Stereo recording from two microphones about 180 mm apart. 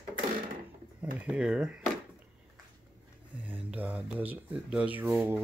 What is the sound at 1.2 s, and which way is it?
Speech, 5° right (ahead or behind).